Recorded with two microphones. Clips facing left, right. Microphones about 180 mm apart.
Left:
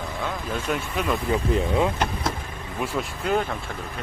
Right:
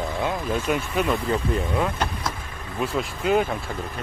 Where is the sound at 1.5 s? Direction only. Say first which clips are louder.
Left 2 dB; 20° left (ahead or behind).